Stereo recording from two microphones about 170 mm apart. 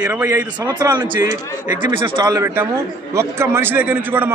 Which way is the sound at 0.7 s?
25° right (ahead or behind).